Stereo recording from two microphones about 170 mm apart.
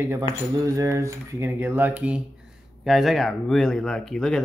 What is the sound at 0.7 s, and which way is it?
Speech, 15° right (ahead or behind).